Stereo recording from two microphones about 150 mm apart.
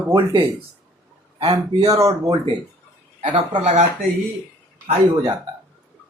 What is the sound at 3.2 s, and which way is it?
Speech, 45° right (ahead or behind).